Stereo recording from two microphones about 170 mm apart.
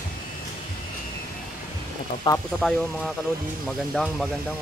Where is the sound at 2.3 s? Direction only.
25° left (ahead or behind).